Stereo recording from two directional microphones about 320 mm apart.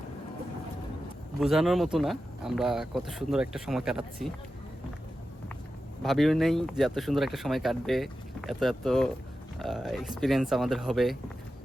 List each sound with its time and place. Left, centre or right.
1.4 s speech: centre
6.0 s speech: centre